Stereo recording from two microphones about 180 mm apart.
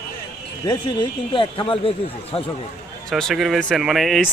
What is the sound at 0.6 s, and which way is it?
Speech, 25° left (ahead or behind).